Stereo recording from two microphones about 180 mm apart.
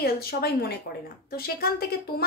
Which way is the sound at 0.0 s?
60° left (ahead or behind).